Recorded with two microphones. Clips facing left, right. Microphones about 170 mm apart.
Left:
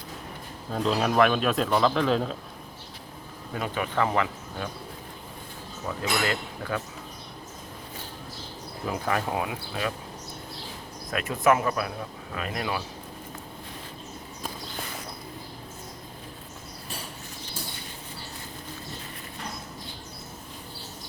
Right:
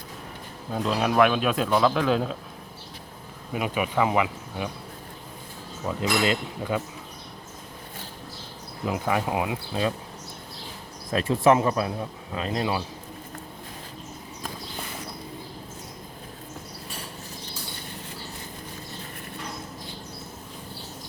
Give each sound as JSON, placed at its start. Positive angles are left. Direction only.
{"t": 0.7, "sound": "a man's voice", "side_deg": -5}
{"t": 3.5, "sound": "speech", "side_deg": -10}
{"t": 6.0, "sound": "speech", "side_deg": -20}
{"t": 8.9, "sound": "speech", "side_deg": -15}
{"t": 11.1, "sound": "speech", "side_deg": -30}